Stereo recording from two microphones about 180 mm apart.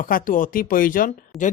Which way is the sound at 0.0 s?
50° left (ahead or behind).